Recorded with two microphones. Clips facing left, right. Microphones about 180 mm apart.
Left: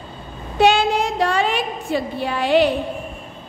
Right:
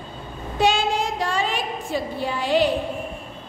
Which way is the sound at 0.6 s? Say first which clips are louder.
Left 5 dB; 65° left (ahead or behind).